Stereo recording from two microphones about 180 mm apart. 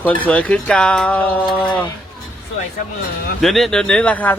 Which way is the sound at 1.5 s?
25° left (ahead or behind).